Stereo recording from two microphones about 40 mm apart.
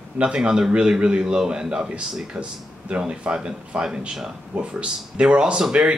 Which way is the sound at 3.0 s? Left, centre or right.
Right.